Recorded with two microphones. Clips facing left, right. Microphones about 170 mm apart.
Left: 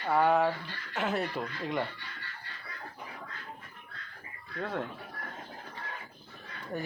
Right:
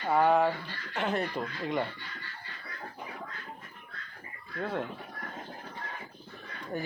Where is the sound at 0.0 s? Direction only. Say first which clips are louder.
Right 1 dB; centre (ahead or behind).